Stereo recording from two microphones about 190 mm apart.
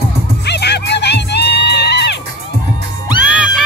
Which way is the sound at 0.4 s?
60° left (ahead or behind).